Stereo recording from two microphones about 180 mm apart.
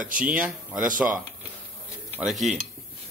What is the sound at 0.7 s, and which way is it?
Speech, 50° right (ahead or behind).